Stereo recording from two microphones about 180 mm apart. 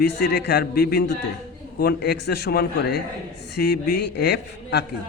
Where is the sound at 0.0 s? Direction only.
65° left (ahead or behind).